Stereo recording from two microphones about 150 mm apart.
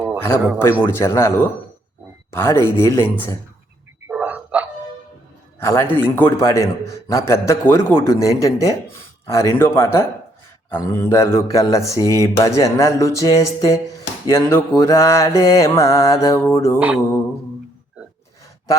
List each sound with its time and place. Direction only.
0.2 s a man's voice: 15° left (ahead or behind)
4.1 s dog: 10° right (ahead or behind)
5.5 s a man's voice: 15° left (ahead or behind)
13.9 s a sound: 20° left (ahead or behind)
14.8 s speech: 20° left (ahead or behind)